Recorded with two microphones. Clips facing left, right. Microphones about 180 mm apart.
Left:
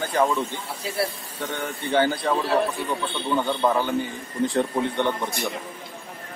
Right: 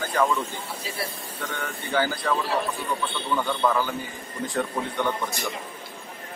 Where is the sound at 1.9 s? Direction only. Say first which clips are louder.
Left 4 dB; 25° left (ahead or behind).